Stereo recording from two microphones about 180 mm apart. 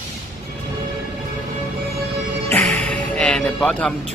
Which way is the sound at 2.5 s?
10° left (ahead or behind).